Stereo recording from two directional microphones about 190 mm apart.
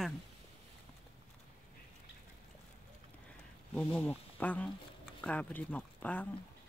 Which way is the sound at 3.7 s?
10° left (ahead or behind).